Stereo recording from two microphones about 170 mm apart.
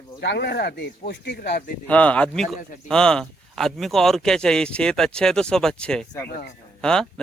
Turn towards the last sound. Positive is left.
turn(degrees=5)  # may be behind; listen again after turning